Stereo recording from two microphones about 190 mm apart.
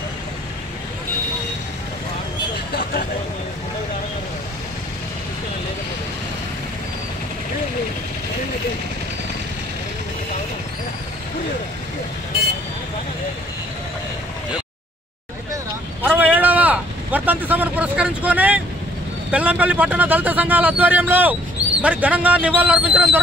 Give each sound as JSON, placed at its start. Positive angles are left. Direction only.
{"t": 2.7, "sound": "vehicle", "side_deg": 50}
{"t": 15.5, "sound": "vehicle", "side_deg": -10}
{"t": 19.3, "sound": "speech", "side_deg": -5}